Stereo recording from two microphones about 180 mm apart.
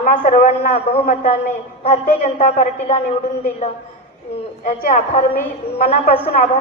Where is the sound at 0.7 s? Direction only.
35° left (ahead or behind).